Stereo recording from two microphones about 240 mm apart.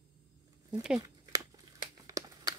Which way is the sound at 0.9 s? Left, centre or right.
Centre.